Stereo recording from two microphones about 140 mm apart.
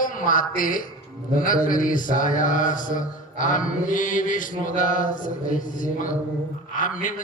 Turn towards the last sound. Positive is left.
turn(degrees=70)  # may be behind; listen again after turning